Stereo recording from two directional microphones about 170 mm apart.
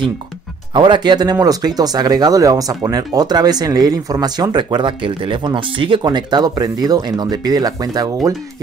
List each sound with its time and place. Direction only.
0.7 s speech: 25° right (ahead or behind)